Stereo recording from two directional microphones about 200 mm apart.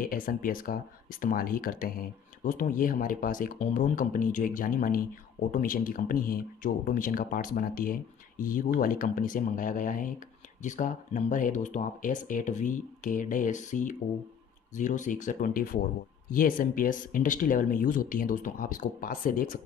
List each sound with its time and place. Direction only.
0.0 s speech: 45° left (ahead or behind)